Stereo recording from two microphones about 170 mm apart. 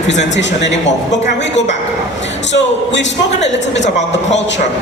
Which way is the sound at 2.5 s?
90° left.